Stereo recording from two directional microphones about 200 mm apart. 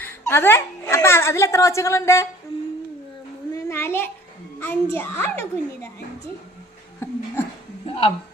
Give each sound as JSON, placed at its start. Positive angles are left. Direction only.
{"t": 0.0, "sound": "a woman's voice", "side_deg": 10}
{"t": 3.5, "sound": "a sound", "side_deg": 15}
{"t": 4.6, "sound": "a woman's voice", "side_deg": 10}
{"t": 7.9, "sound": "a woman's voice", "side_deg": 25}